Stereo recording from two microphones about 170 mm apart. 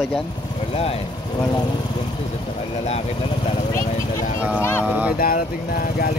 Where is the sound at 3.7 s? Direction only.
20° left (ahead or behind).